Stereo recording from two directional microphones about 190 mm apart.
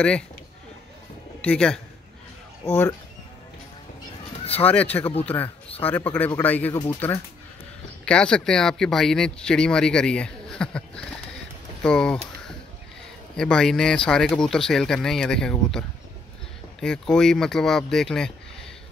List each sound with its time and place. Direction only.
1.4 s speech: 5° left (ahead or behind)
4.6 s speech: 10° left (ahead or behind)
13.4 s speech: 5° left (ahead or behind)
16.8 s speech: 5° left (ahead or behind)